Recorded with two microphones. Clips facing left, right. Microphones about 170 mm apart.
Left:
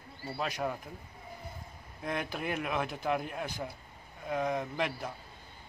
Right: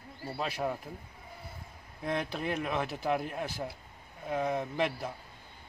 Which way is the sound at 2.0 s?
Centre (ahead or behind).